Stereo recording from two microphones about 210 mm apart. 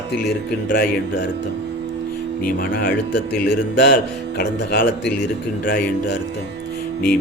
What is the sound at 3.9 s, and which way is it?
Speech, 50° left (ahead or behind).